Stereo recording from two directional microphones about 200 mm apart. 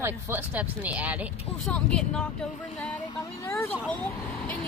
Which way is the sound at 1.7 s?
5° left (ahead or behind).